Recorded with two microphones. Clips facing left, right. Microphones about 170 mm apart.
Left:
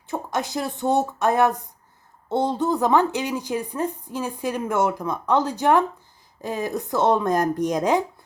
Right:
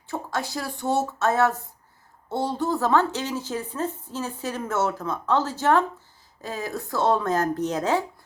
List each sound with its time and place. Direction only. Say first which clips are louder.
0.1 s speech: left 3 dB; 20° left (ahead or behind)